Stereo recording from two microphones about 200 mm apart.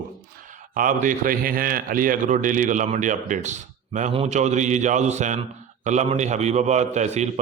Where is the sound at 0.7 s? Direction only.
40° right (ahead or behind).